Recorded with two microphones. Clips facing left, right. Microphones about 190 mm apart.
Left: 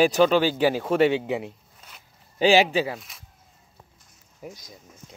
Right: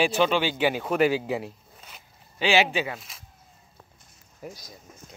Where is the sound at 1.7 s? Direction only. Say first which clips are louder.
Right 2 dB; 5° right (ahead or behind).